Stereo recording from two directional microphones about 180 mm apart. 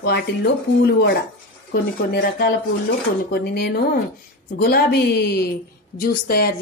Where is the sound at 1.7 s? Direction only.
60° left (ahead or behind).